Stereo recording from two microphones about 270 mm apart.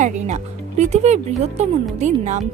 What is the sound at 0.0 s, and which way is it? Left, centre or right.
Speech, right.